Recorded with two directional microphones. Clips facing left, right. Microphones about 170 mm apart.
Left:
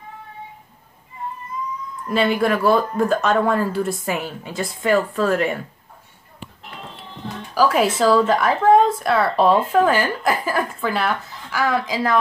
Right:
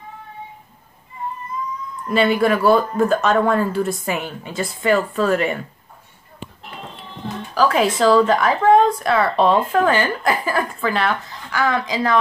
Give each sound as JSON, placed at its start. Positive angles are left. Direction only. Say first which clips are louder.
{"t": 2.0, "sound": "a woman's voice", "louder": "right 2 dB", "side_deg": 0}
{"t": 7.5, "sound": "a woman's voice", "louder": "even", "side_deg": 5}